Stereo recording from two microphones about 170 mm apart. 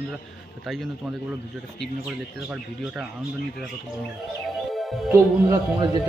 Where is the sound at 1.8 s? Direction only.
5° right (ahead or behind).